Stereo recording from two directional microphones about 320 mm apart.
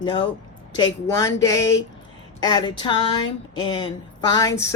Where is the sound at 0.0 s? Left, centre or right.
Centre.